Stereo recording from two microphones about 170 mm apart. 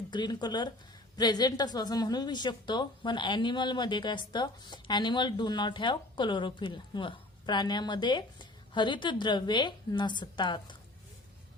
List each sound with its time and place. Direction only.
0.1 s a woman's voice: 25° left (ahead or behind)